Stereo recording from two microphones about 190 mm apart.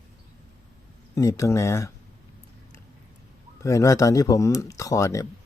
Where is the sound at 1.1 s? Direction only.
15° left (ahead or behind).